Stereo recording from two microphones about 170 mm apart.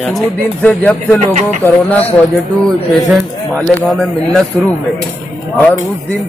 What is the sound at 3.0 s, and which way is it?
Speech, 5° left (ahead or behind).